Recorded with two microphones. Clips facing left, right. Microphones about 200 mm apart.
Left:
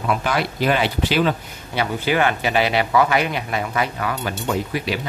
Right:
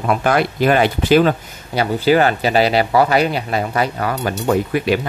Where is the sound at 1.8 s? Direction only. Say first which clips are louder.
Right 6 dB; 35° right (ahead or behind); by 5.0 s 55° right (ahead or behind).